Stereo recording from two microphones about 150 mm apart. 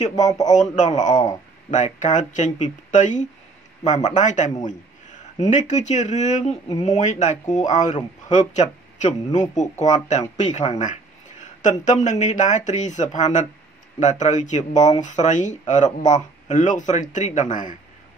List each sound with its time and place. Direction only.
0.5 s speech: 55° left (ahead or behind)